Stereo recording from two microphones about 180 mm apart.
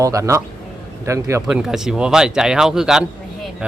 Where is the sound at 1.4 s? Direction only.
5° right (ahead or behind).